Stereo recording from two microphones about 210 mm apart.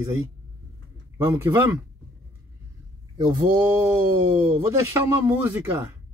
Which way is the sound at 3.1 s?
20° right (ahead or behind).